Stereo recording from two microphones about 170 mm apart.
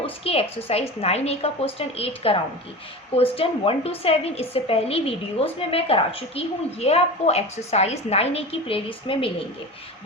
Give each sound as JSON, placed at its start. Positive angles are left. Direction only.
{"t": 0.0, "sound": "a woman's voice", "side_deg": 35}